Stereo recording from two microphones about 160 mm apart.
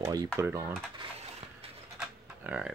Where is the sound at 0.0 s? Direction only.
25° right (ahead or behind).